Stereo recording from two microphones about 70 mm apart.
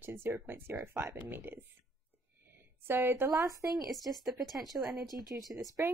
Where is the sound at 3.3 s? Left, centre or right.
Right.